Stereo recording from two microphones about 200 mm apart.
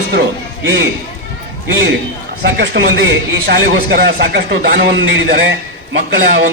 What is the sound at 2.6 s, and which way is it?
A man's voice, 60° right (ahead or behind).